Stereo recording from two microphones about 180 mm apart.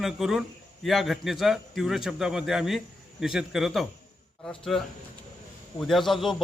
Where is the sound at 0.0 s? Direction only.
Centre (ahead or behind).